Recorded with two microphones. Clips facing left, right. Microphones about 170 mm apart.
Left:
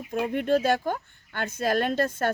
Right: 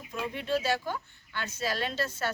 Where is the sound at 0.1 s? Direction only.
55° left (ahead or behind).